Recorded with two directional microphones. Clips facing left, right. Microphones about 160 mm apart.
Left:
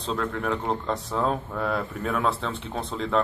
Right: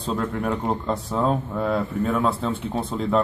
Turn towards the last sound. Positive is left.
turn(degrees=-5)  # may be behind; listen again after turning